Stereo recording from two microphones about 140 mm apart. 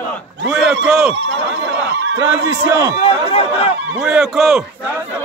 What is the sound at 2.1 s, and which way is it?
Speech, 20° right (ahead or behind).